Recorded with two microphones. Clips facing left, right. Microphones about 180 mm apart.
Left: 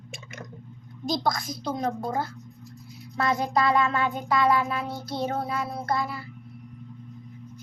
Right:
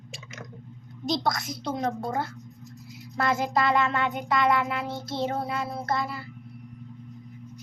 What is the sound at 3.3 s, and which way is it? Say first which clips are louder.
Child singing: left 1 dB; 25° right (ahead or behind).